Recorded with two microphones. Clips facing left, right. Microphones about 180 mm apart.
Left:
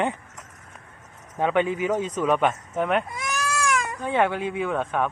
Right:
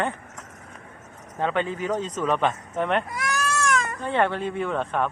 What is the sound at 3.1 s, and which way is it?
Speech, 15° left (ahead or behind).